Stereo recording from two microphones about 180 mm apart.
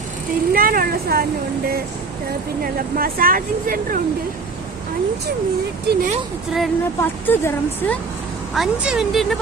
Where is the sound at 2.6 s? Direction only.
55° right (ahead or behind).